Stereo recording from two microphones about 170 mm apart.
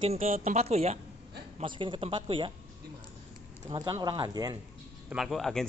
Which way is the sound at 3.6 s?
25° right (ahead or behind).